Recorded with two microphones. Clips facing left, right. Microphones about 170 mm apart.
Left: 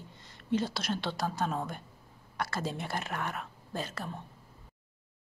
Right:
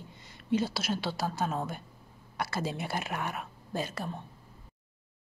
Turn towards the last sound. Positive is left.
turn(degrees=-15)  # may be behind; listen again after turning